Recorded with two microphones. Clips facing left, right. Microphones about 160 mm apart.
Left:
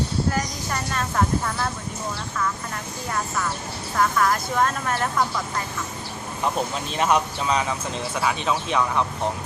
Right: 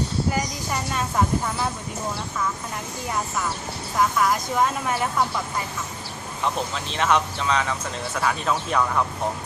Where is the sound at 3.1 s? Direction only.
10° right (ahead or behind).